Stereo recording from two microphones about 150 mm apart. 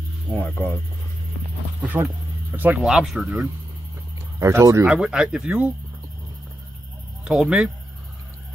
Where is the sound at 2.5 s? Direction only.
10° right (ahead or behind).